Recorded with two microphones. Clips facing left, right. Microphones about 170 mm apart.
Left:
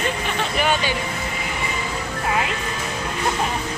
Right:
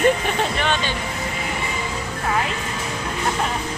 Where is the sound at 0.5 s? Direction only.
10° left (ahead or behind).